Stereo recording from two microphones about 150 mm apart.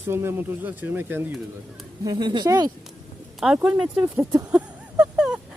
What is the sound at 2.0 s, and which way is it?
Speech, 30° right (ahead or behind).